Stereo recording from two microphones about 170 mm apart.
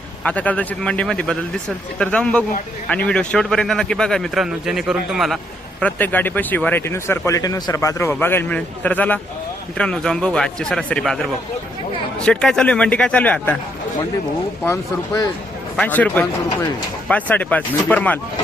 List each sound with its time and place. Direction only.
0.3 s a man's voice: 10° left (ahead or behind)
5.8 s a man's voice: 10° left (ahead or behind)
14.6 s speech: 20° left (ahead or behind)
15.7 s speech: 5° left (ahead or behind)